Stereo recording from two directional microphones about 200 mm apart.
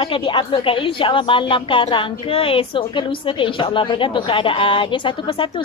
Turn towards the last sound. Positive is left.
turn(degrees=25)  # may be behind; listen again after turning